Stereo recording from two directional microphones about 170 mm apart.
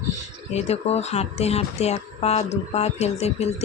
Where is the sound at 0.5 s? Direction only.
40° left (ahead or behind).